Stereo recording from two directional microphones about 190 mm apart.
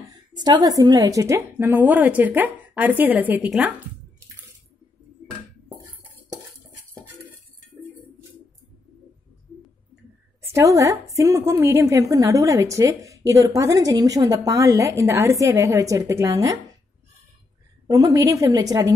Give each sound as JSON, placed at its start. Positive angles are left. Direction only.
{"t": 0.4, "sound": "a woman's voice", "side_deg": -20}
{"t": 10.5, "sound": "a woman's voice", "side_deg": -15}
{"t": 17.8, "sound": "a woman's voice", "side_deg": -20}